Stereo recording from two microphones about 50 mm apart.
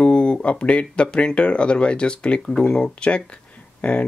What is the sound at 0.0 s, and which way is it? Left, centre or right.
Speech, left.